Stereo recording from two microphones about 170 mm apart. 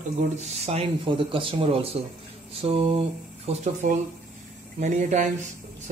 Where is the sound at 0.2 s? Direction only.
35° right (ahead or behind).